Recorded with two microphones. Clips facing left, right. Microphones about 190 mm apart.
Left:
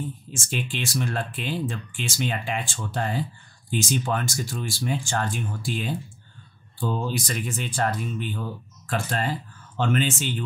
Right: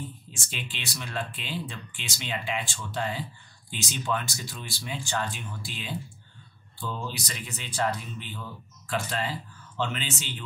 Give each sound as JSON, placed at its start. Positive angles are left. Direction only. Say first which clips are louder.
{"t": 0.3, "sound": "speech", "louder": "left 9 dB", "side_deg": 45}